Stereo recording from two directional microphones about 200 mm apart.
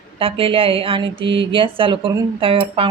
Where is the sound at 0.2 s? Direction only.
25° right (ahead or behind).